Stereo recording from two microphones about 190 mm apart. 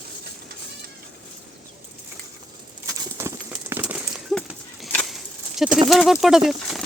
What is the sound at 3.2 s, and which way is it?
Clip-clop, 15° right (ahead or behind).